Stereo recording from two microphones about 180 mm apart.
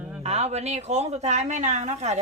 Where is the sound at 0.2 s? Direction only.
35° right (ahead or behind).